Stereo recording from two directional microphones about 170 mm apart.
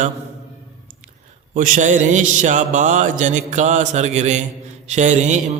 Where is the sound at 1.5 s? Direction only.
50° right (ahead or behind).